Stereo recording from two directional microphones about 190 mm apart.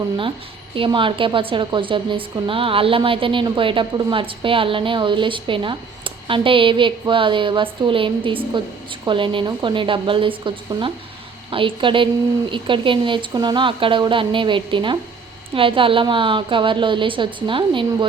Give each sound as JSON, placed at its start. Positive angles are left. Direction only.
{"t": 0.8, "sound": "a woman's voice", "side_deg": -25}